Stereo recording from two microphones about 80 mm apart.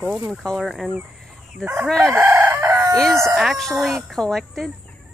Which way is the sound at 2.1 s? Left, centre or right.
Right.